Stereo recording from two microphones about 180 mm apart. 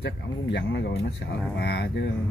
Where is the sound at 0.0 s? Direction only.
70° left (ahead or behind).